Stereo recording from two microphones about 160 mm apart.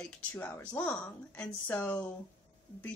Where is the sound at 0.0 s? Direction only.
10° left (ahead or behind).